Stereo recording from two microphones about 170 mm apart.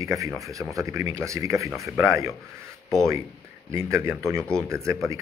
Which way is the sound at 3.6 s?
15° right (ahead or behind).